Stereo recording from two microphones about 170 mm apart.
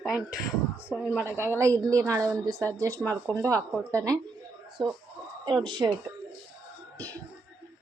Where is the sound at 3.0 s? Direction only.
5° left (ahead or behind).